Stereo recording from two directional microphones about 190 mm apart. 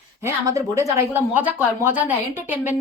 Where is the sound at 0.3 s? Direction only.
15° right (ahead or behind).